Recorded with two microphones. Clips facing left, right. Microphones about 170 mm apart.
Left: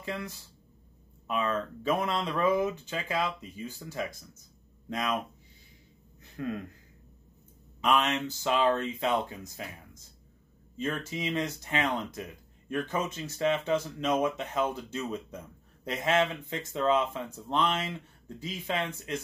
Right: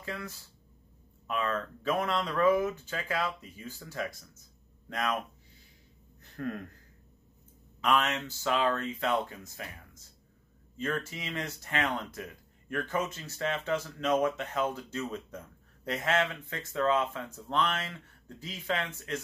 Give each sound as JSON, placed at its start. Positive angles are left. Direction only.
{"t": 0.0, "sound": "speech", "side_deg": 20}
{"t": 6.3, "sound": "speech", "side_deg": 15}
{"t": 7.8, "sound": "speech", "side_deg": 20}
{"t": 10.8, "sound": "speech", "side_deg": 20}